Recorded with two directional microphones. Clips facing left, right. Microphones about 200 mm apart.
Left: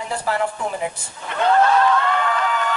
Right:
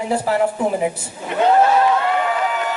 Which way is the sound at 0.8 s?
20° right (ahead or behind).